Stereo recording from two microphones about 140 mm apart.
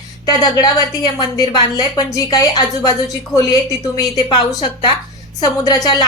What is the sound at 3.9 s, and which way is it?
A woman's voice, 30° left (ahead or behind).